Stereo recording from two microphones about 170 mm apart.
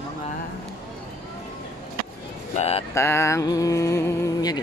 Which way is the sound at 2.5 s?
35° left (ahead or behind).